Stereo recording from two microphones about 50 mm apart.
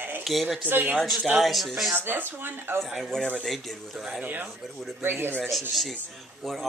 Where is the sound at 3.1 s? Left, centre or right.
Centre.